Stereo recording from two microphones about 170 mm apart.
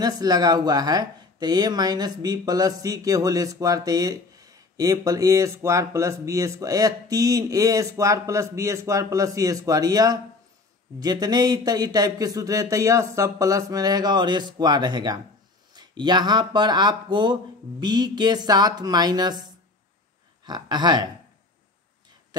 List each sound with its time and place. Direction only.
0.0 s speech: 25° right (ahead or behind)
22.3 s speech: 25° right (ahead or behind)